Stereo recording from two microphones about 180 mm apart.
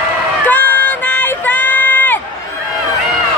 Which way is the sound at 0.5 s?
10° left (ahead or behind).